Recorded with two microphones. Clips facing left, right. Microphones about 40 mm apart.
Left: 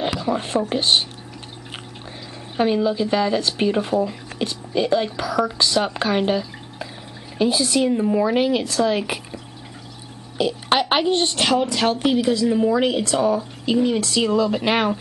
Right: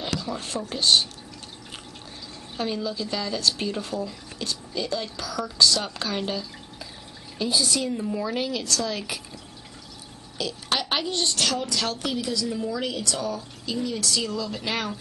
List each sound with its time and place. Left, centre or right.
0.1 s speech: left
2.5 s speech: left